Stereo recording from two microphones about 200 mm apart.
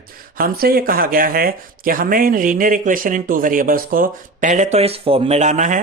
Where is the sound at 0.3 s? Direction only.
50° right (ahead or behind).